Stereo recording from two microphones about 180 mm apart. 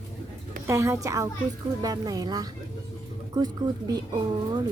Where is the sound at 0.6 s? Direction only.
15° right (ahead or behind).